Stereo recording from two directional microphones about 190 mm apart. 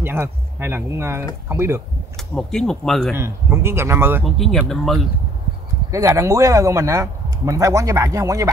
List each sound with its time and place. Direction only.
0.0 s speech: 10° right (ahead or behind)
2.3 s speech: centre (ahead or behind)
3.2 s speech: 15° right (ahead or behind)
4.2 s speech: 5° left (ahead or behind)
5.9 s speech: 15° right (ahead or behind)